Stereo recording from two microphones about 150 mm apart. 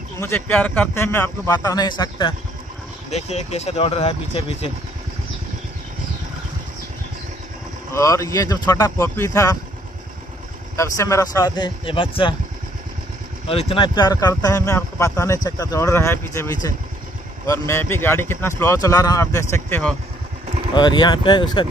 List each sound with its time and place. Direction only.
0.5 s speech: 10° left (ahead or behind); by 2.3 s 30° left (ahead or behind)
3.1 s speech: 45° left (ahead or behind)
7.9 s speech: 20° left (ahead or behind)
10.8 s speech: 20° left (ahead or behind); by 12.4 s 35° left (ahead or behind)
13.5 s speech: 40° left (ahead or behind); by 19.8 s 20° left (ahead or behind)
20.7 s speech: 30° left (ahead or behind)